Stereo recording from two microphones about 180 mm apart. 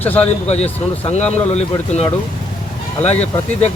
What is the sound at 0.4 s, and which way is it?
Speech, 35° left (ahead or behind).